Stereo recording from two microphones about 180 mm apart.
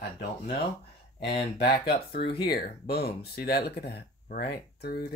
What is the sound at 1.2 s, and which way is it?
Speech, 60° left (ahead or behind).